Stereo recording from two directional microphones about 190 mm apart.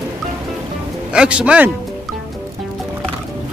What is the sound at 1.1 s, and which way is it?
Speech, 5° right (ahead or behind).